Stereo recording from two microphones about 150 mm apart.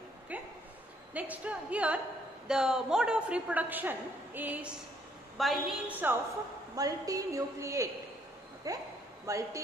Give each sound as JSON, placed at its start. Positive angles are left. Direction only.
{"t": 0.3, "sound": "a sound", "side_deg": -10}
{"t": 1.1, "sound": "a woman's voice", "side_deg": -10}
{"t": 5.4, "sound": "a woman's voice", "side_deg": 0}
{"t": 5.9, "sound": "a woman's voice", "side_deg": -10}
{"t": 6.7, "sound": "a woman's voice", "side_deg": -25}